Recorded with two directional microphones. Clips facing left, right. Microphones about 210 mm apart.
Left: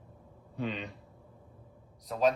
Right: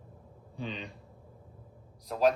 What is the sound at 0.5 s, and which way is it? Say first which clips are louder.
Speech: left 3 dB; 5° left (ahead or behind).